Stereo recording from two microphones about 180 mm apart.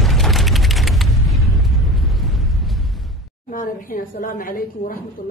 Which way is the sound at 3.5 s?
50° left (ahead or behind).